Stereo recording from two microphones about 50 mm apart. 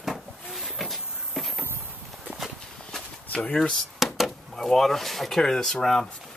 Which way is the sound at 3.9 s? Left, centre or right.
Centre.